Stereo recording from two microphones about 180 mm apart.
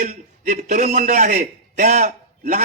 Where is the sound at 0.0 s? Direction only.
40° right (ahead or behind).